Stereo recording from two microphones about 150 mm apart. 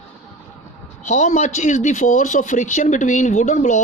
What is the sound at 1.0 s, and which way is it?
Speech, 55° left (ahead or behind).